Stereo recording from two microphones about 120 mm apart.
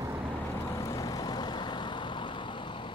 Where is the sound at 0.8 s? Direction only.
30° left (ahead or behind).